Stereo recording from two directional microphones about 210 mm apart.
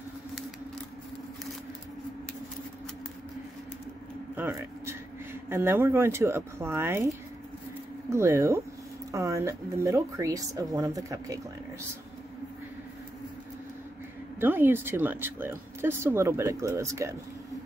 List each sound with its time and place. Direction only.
4.4 s speech: 15° right (ahead or behind)
14.4 s speech: 10° right (ahead or behind)